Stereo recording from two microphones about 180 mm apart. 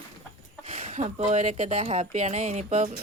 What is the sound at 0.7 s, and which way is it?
Speech, 40° right (ahead or behind).